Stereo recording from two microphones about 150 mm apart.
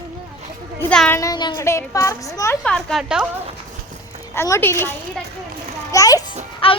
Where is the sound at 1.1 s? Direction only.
25° left (ahead or behind).